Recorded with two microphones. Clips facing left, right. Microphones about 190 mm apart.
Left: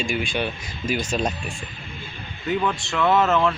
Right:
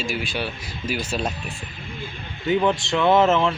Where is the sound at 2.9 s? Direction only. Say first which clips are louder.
Right 1 dB; 30° right (ahead or behind).